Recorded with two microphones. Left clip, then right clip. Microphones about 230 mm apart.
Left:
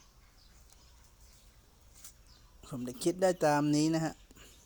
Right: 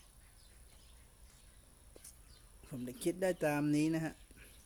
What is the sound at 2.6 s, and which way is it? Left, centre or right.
Speech, centre.